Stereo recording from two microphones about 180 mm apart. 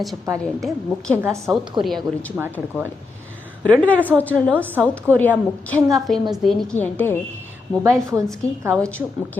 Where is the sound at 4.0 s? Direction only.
10° right (ahead or behind).